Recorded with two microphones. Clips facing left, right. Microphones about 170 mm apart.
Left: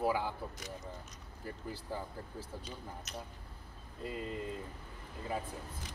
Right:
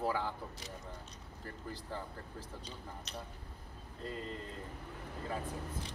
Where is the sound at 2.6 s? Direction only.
30° right (ahead or behind).